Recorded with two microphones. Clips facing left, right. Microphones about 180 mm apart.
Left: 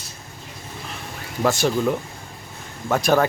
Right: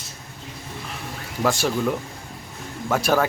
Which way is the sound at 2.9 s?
5° right (ahead or behind).